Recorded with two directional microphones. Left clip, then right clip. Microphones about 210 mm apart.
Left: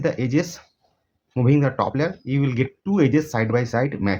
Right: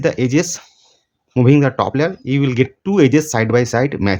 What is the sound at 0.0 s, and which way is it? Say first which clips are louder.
Speech: right 6 dB; 40° right (ahead or behind).